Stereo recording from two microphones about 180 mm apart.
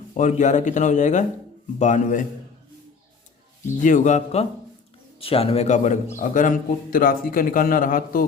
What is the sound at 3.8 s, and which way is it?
A man's voice, 45° left (ahead or behind).